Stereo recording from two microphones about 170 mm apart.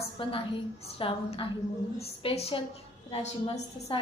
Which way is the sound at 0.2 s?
30° left (ahead or behind).